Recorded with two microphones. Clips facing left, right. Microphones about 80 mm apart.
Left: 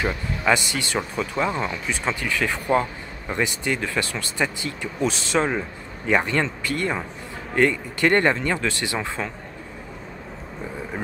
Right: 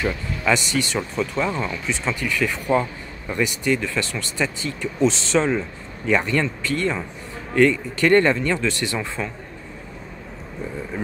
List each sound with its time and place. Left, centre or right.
0.0 s speech: left